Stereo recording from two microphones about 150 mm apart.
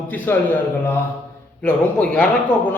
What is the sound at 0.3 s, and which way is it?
Speech, 15° left (ahead or behind).